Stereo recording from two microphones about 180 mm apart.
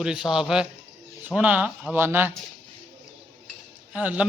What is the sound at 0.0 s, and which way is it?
A man's voice, 5° right (ahead or behind).